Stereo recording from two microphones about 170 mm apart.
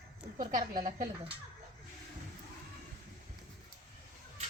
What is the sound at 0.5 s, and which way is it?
Speech, 50° right (ahead or behind).